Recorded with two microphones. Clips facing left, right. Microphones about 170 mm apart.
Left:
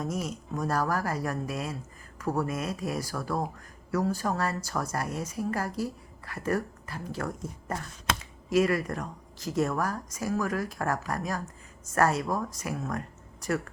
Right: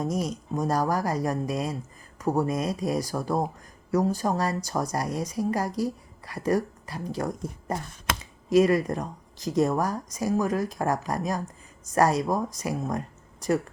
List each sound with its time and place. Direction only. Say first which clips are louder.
0.0 s speech: right 4 dB; 15° right (ahead or behind)